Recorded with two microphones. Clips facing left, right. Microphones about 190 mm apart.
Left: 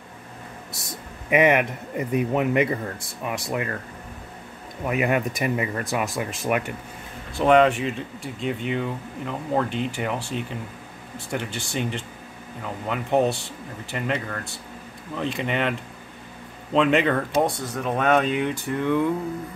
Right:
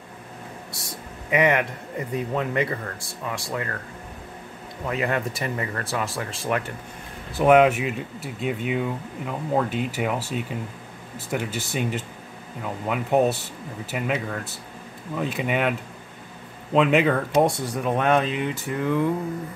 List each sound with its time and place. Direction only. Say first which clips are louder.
0.7 s speech: right 1 dB; 20° left (ahead or behind)
4.8 s speech: left 3 dB; 15° left (ahead or behind)
7.3 s speech: right 1 dB; 5° right (ahead or behind)
11.2 s speech: right 2 dB; 5° right (ahead or behind)
16.7 s speech: right 1 dB; 5° right (ahead or behind)
17.9 s speech: left 2 dB; centre (ahead or behind)